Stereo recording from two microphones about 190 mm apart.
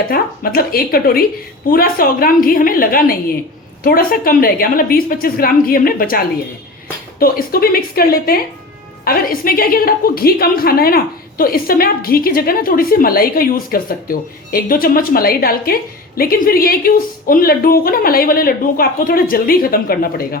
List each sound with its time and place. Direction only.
0.1 s a woman's voice: 50° left (ahead or behind)